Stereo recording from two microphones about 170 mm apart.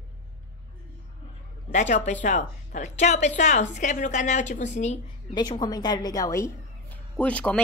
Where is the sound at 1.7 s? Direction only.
45° left (ahead or behind).